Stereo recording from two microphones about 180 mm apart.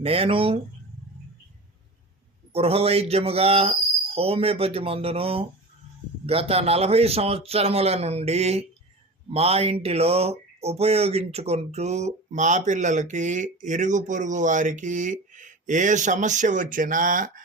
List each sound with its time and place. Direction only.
0.0 s speech: 30° right (ahead or behind)
2.5 s speech: 35° right (ahead or behind)